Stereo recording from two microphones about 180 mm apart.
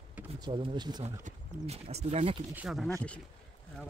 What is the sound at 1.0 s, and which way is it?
Speech, 35° right (ahead or behind).